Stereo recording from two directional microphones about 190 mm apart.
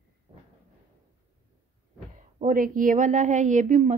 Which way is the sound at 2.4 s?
45° right (ahead or behind).